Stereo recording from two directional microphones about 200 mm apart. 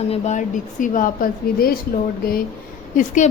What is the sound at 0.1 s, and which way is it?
Speech, 35° left (ahead or behind).